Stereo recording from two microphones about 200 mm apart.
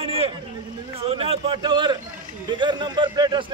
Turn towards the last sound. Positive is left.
turn(degrees=-20)  # may be behind; listen again after turning